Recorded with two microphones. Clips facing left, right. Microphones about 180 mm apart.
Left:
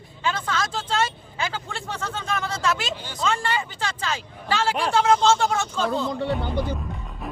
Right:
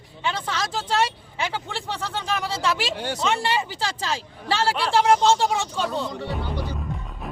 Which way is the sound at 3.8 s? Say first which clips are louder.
Right 1 dB; 35° right (ahead or behind).